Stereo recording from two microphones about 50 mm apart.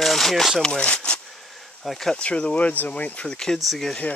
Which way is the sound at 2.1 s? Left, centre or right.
Left.